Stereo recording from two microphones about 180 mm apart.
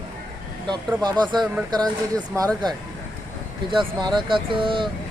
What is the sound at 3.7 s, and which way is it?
Speech, 25° right (ahead or behind).